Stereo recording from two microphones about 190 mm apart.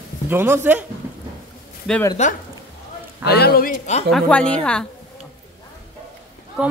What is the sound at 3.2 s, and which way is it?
Speech, 60° left (ahead or behind).